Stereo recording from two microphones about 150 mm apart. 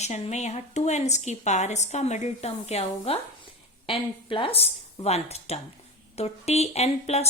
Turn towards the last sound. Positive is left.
turn(degrees=45)  # may be behind; listen again after turning